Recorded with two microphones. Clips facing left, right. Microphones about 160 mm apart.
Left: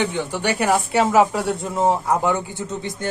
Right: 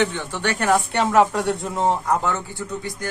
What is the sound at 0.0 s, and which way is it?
Speech, 15° left (ahead or behind).